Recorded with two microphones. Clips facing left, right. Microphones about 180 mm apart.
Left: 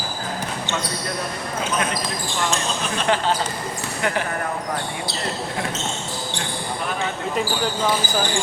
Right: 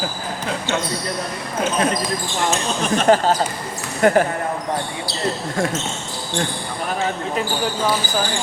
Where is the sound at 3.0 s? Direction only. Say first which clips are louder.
Right 6 dB; 40° right (ahead or behind).